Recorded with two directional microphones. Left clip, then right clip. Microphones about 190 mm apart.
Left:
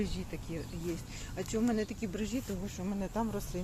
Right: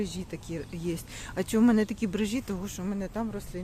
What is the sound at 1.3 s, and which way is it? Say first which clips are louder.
Speech: right 8 dB; 55° right (ahead or behind).